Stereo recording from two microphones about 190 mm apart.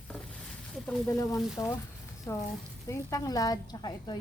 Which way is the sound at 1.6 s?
20° left (ahead or behind).